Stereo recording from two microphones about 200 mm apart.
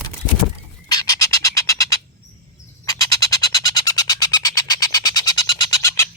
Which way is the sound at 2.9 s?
15° left (ahead or behind).